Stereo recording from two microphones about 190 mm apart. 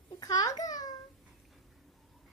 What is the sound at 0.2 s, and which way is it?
Babbling, 20° left (ahead or behind).